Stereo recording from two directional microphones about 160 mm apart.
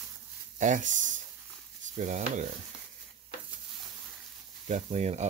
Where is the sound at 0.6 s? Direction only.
50° right (ahead or behind).